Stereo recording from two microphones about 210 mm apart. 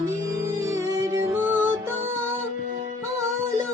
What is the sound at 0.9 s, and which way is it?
Music, 15° right (ahead or behind).